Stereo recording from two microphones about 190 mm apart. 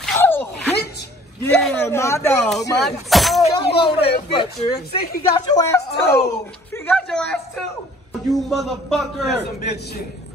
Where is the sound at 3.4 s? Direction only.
30° left (ahead or behind).